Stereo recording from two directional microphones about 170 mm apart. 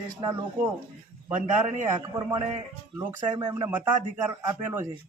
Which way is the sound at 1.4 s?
45° right (ahead or behind).